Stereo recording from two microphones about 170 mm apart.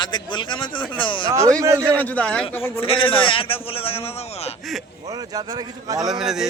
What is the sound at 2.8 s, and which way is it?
A man's voice, 35° left (ahead or behind).